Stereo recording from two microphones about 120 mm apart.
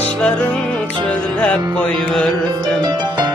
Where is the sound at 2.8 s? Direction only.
35° right (ahead or behind).